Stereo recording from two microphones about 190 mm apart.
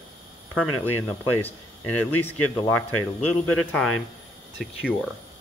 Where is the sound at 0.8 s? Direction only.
10° left (ahead or behind).